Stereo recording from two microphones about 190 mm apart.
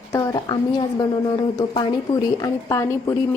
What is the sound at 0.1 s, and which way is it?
A woman's voice, 15° left (ahead or behind).